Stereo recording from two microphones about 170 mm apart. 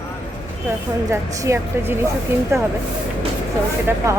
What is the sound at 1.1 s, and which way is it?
Speech, 15° right (ahead or behind).